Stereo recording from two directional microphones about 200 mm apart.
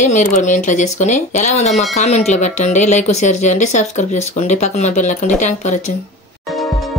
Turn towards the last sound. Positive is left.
turn(degrees=0)  # may be behind; listen again after turning